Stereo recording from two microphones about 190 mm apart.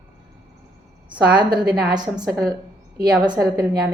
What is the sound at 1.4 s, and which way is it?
Speech, 25° right (ahead or behind).